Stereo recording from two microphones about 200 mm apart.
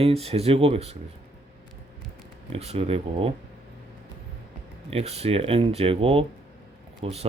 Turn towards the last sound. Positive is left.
turn(degrees=-30)  # may be behind; listen again after turning